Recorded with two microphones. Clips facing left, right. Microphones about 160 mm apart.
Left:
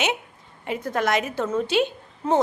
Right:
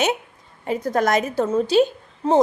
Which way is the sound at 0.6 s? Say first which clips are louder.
Right 4 dB; 40° right (ahead or behind).